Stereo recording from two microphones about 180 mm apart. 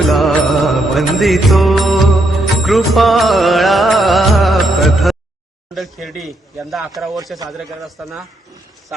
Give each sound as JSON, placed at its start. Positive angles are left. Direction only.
{"t": 0.1, "sound": "music", "side_deg": 0}
{"t": 5.7, "sound": "a man's voice", "side_deg": 0}